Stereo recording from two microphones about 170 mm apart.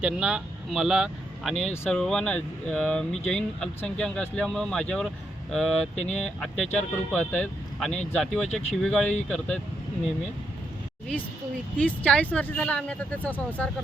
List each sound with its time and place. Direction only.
0.0 s speech: 5° right (ahead or behind)
6.0 s speech: 40° left (ahead or behind)
6.2 s speech: centre (ahead or behind)
11.9 s speech: 10° left (ahead or behind)